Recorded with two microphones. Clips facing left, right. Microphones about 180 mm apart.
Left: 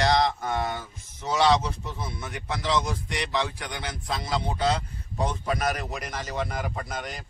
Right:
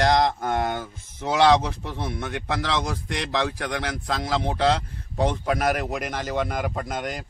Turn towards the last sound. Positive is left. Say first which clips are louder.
# right 5 dB
turn(degrees=-50)  # may be behind; listen again after turning